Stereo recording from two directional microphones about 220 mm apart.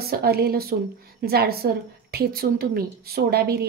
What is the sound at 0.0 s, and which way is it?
A woman's voice, 45° right (ahead or behind).